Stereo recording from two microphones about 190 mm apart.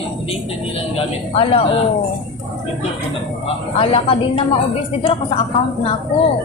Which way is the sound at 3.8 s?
30° left (ahead or behind).